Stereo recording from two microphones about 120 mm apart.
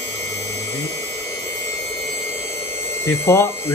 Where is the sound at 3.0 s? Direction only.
20° left (ahead or behind).